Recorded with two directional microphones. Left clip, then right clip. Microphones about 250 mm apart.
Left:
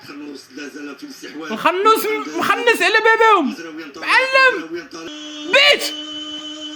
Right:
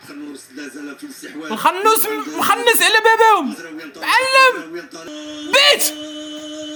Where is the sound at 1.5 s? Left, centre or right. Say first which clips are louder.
Even; centre.